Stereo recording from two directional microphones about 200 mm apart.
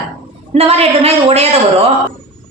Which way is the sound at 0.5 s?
30° right (ahead or behind).